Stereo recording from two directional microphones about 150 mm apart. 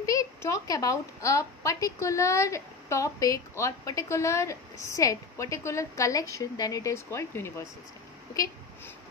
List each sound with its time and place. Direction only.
0.0 s a woman's voice: 20° left (ahead or behind)